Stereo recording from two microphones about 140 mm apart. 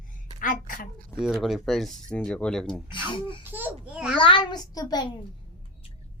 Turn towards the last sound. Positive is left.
turn(degrees=30)  # may be behind; listen again after turning